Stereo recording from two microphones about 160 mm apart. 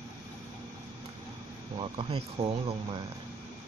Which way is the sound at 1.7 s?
35° right (ahead or behind).